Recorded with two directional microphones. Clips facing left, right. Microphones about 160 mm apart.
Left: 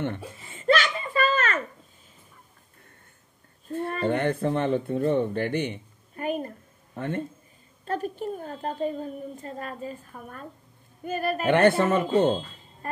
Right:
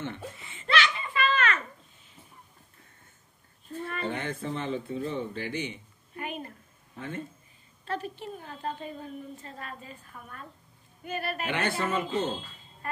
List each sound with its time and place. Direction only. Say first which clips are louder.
0.4 s a sound: left 5 dB; 45° left (ahead or behind)
3.6 s speech: left 7 dB; 55° left (ahead or behind)
6.1 s a woman's voice: left 8 dB; 40° left (ahead or behind)
7.0 s speech: left 7 dB; 60° left (ahead or behind)
7.8 s a woman's voice: left 5 dB; 45° left (ahead or behind)
12.8 s a woman's voice: left 2 dB; 40° left (ahead or behind)